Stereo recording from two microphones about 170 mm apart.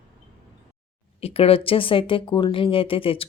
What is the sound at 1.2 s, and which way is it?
Speech, 35° left (ahead or behind).